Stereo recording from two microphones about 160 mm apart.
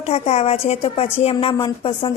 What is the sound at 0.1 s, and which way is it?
A woman's voice, 40° left (ahead or behind).